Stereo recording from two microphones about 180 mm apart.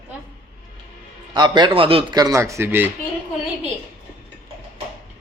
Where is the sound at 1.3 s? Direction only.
25° right (ahead or behind).